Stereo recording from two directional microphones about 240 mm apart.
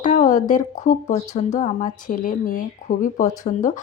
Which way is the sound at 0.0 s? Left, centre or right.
Left.